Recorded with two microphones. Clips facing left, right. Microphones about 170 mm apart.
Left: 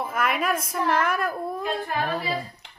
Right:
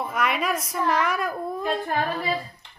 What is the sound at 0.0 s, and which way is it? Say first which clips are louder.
Speech: even; centre (ahead or behind).